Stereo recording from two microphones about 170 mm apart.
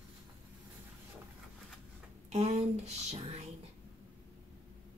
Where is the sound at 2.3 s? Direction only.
40° right (ahead or behind).